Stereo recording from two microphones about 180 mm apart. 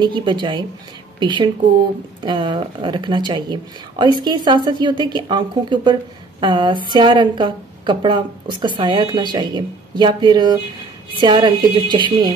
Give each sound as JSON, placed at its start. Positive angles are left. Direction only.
{"t": 0.0, "sound": "a woman's voice", "side_deg": -25}